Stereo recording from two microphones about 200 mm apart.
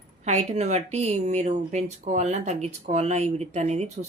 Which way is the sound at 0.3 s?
35° right (ahead or behind).